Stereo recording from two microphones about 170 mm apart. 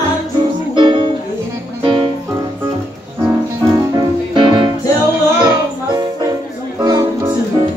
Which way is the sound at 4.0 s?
30° right (ahead or behind).